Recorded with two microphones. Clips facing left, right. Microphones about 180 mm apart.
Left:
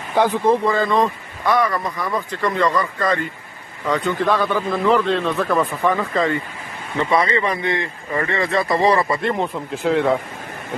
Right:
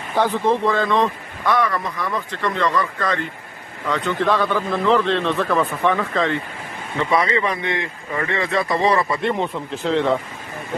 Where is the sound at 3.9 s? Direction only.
5° left (ahead or behind).